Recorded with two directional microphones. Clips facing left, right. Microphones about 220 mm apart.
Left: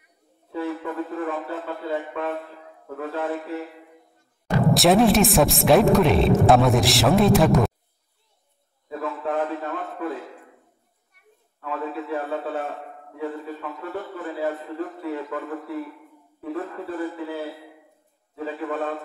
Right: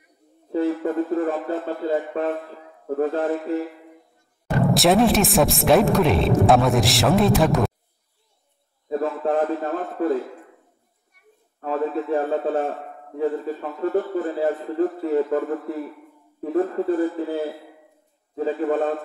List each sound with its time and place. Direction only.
0.5 s a man's voice: 40° right (ahead or behind)
4.6 s speech: centre (ahead or behind)
8.8 s a sound: 35° right (ahead or behind)
11.6 s a man's voice: 40° right (ahead or behind)